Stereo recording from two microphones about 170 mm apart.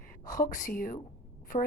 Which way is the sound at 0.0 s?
55° left (ahead or behind).